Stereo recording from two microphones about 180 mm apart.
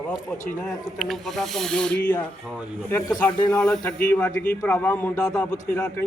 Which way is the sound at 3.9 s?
10° left (ahead or behind).